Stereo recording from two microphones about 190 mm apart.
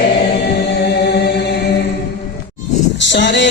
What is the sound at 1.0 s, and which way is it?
Chant, 60° left (ahead or behind).